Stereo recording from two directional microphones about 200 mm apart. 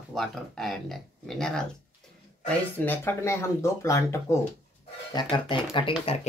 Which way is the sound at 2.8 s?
10° left (ahead or behind).